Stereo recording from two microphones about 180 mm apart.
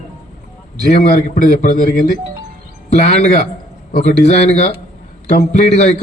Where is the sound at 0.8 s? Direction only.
40° left (ahead or behind).